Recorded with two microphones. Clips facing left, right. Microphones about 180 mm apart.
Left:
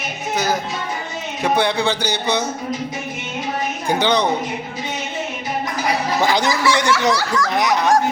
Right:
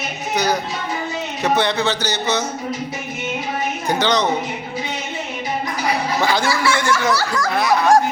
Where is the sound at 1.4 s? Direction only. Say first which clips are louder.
Left 1 dB; 10° left (ahead or behind).